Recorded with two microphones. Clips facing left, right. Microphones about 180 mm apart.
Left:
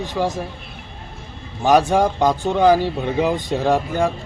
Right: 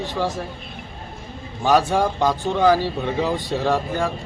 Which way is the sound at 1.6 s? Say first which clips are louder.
Left 3 dB; 15° left (ahead or behind).